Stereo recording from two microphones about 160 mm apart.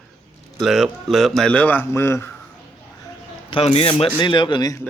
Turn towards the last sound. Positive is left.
turn(degrees=25)  # may be behind; listen again after turning